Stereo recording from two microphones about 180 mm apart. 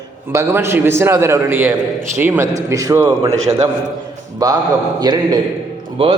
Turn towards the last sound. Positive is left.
turn(degrees=-30)  # may be behind; listen again after turning